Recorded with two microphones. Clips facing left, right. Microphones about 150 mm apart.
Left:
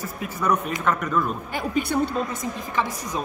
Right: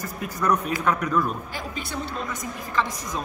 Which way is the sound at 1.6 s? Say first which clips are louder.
Left 9 dB; 55° left (ahead or behind).